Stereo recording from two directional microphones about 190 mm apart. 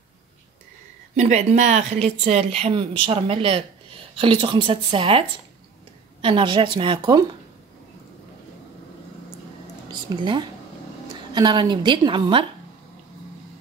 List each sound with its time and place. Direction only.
1.1 s a woman's voice: 40° right (ahead or behind)
6.2 s a woman's voice: 25° right (ahead or behind)
10.0 s a woman's voice: 25° right (ahead or behind)